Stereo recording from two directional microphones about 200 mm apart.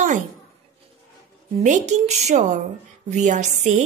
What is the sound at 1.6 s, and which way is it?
A woman's voice, 35° right (ahead or behind).